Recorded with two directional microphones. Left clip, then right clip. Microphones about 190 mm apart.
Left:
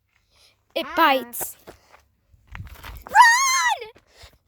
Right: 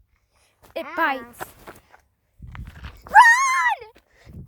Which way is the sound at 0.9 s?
35° left (ahead or behind).